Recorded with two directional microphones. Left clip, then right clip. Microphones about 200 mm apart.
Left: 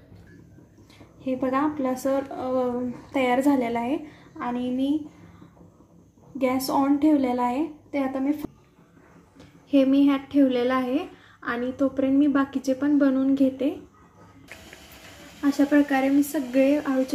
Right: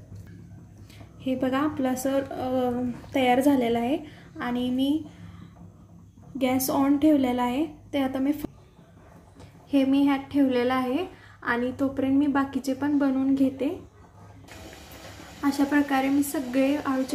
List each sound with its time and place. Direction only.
1.2 s a woman's voice: 20° right (ahead or behind)
6.3 s a woman's voice: 15° right (ahead or behind)
9.7 s a woman's voice: centre (ahead or behind)
15.7 s a woman's voice: centre (ahead or behind)